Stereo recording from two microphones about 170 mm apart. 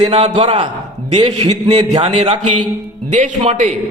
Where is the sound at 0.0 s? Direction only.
35° right (ahead or behind).